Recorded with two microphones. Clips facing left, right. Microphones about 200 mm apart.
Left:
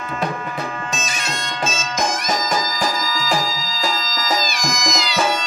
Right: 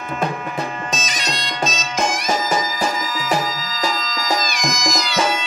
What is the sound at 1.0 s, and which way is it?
Bagpipes, 20° right (ahead or behind).